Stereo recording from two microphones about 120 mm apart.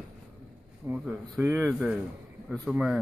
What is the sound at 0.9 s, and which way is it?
Speech, 15° right (ahead or behind).